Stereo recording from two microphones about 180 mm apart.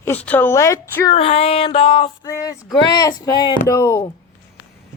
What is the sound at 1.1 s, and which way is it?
Female singing, 35° left (ahead or behind).